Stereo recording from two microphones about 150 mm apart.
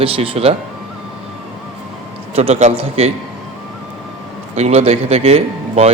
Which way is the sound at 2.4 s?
45° right (ahead or behind).